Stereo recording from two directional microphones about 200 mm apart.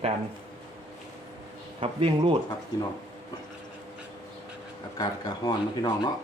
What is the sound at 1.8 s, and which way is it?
Speech, 25° right (ahead or behind).